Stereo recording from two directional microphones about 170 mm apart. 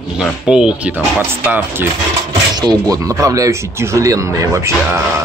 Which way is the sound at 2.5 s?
20° right (ahead or behind).